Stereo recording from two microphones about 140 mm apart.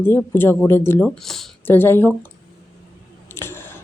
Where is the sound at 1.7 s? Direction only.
15° left (ahead or behind).